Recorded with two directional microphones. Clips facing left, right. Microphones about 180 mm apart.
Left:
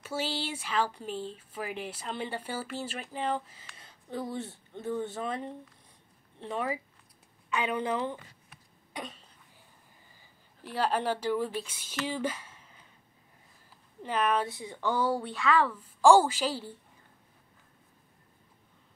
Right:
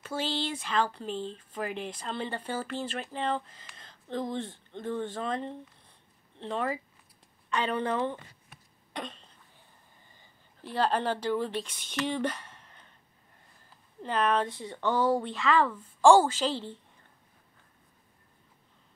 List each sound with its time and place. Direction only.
0.0 s speech: 10° left (ahead or behind)
8.9 s cough: 10° left (ahead or behind)
10.7 s speech: 10° left (ahead or behind)
14.0 s speech: 10° left (ahead or behind)